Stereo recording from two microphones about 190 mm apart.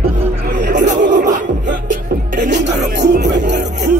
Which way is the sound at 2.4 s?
65° right (ahead or behind).